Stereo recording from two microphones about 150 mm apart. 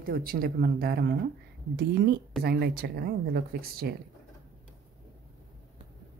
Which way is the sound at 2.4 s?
90° right.